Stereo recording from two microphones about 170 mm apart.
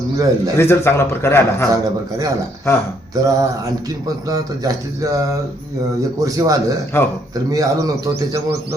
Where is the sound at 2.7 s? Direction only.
15° left (ahead or behind).